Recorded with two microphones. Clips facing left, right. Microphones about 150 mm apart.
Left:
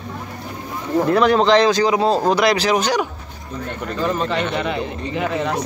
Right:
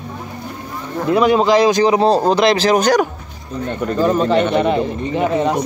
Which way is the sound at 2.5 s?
40° right (ahead or behind).